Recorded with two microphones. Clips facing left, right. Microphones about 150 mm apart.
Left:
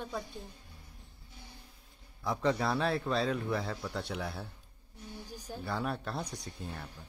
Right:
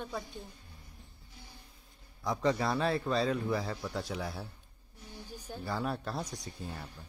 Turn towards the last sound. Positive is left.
turn(degrees=-5)  # may be behind; listen again after turning